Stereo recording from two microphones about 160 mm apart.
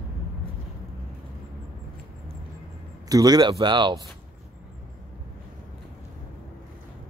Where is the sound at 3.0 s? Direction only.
25° right (ahead or behind).